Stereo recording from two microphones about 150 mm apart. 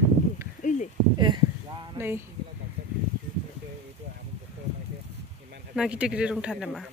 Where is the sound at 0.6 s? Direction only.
55° left (ahead or behind).